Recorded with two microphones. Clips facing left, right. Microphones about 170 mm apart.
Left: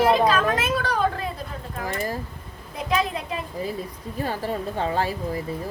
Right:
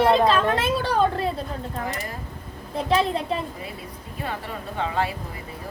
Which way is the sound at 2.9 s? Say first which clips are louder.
Right 3 dB; 30° right (ahead or behind).